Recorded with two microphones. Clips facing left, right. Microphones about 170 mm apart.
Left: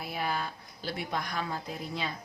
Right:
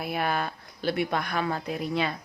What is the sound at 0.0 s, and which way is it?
Speech, 65° right (ahead or behind).